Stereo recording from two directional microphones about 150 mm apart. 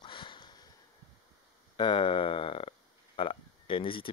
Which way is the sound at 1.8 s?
35° left (ahead or behind).